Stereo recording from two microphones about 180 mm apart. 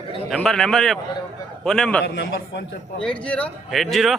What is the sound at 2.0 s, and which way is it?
Speech, 65° left (ahead or behind).